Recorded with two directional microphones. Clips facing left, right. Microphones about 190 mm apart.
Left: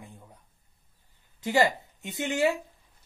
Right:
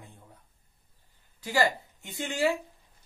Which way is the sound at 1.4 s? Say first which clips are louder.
Left 3 dB; 20° left (ahead or behind).